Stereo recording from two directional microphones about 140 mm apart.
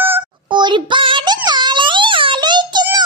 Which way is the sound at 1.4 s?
30° right (ahead or behind).